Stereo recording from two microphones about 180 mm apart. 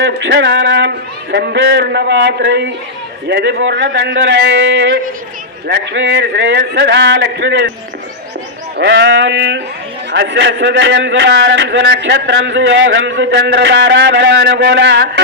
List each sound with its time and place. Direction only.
0.0 s a man's voice: 75° right (ahead or behind)
5.6 s a man's voice: 75° right (ahead or behind)
8.8 s a man's voice: 80° right